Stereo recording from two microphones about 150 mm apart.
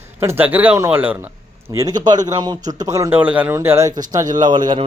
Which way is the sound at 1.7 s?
25° right (ahead or behind).